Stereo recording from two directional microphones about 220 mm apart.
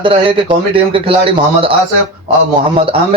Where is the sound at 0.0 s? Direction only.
20° right (ahead or behind).